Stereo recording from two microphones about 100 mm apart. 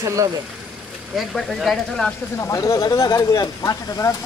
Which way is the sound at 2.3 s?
30° left (ahead or behind).